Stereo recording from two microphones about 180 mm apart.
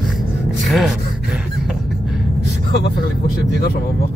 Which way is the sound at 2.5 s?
65° left (ahead or behind).